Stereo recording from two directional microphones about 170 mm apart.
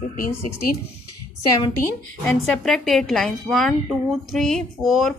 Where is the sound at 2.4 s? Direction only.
Centre (ahead or behind).